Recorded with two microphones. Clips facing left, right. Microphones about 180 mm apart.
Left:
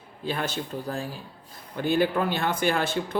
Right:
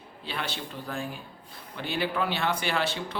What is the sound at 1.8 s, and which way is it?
Speech, 45° left (ahead or behind).